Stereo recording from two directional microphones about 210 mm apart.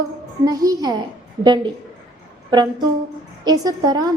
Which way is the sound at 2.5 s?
20° right (ahead or behind).